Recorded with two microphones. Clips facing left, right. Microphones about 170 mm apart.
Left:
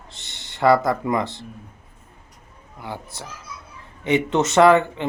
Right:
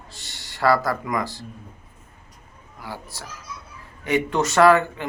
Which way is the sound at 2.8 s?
20° left (ahead or behind).